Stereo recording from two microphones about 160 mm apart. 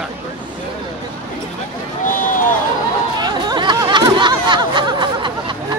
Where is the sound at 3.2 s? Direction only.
25° right (ahead or behind).